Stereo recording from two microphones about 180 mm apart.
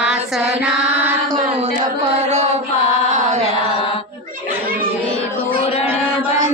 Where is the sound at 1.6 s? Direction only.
35° right (ahead or behind).